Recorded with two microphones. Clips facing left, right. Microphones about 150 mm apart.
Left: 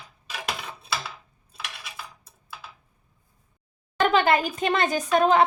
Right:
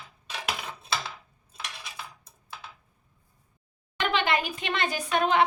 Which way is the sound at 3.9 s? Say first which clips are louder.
Left 6 dB; 45° left (ahead or behind).